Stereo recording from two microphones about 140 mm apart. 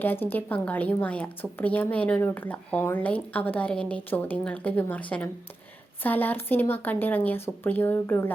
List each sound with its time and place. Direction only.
0.0 s speech: 15° left (ahead or behind)